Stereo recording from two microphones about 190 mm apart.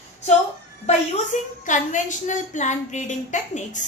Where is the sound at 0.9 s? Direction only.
40° left (ahead or behind).